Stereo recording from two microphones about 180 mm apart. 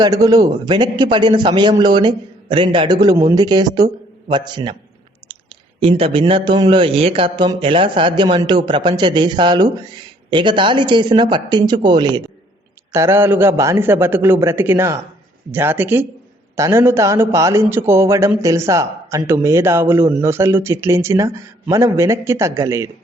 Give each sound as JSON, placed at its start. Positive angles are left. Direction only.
{"t": 0.0, "sound": "speech", "side_deg": -20}